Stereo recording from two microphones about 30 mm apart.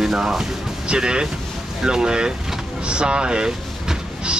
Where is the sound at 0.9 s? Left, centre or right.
Right.